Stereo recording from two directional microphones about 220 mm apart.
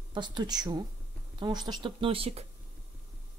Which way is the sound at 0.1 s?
20° right (ahead or behind).